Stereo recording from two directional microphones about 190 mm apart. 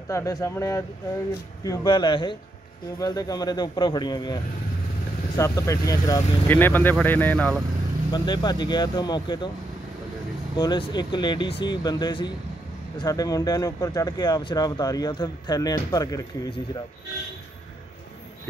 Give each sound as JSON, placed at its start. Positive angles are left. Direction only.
{"t": 0.1, "sound": "speech", "side_deg": 15}
{"t": 5.4, "sound": "speech", "side_deg": 15}
{"t": 8.1, "sound": "speech", "side_deg": 25}
{"t": 10.5, "sound": "speech", "side_deg": 25}